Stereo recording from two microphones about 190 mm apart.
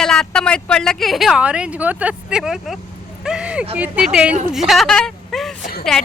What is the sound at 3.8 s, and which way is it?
Speech, 5° right (ahead or behind).